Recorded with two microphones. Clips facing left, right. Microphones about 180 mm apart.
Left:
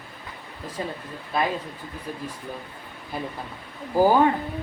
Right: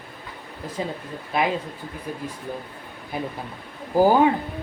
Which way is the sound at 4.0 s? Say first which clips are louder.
Right 1 dB; 15° right (ahead or behind).